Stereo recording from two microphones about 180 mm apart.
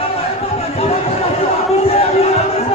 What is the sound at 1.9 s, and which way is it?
Music, 35° left (ahead or behind).